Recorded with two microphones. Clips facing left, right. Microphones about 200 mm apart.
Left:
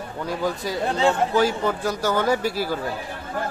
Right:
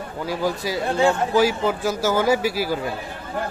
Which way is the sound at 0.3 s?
5° right (ahead or behind).